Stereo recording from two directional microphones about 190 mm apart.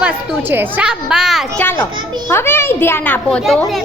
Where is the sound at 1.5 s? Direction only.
10° left (ahead or behind).